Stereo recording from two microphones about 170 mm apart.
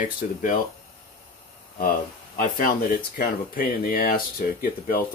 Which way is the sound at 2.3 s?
55° left (ahead or behind).